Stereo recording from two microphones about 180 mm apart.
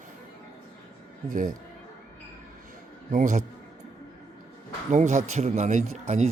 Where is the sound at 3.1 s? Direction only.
45° right (ahead or behind).